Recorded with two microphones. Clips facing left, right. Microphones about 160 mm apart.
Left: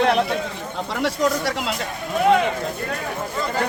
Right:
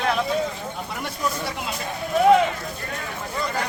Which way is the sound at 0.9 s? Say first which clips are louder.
Left 9 dB; 80° left.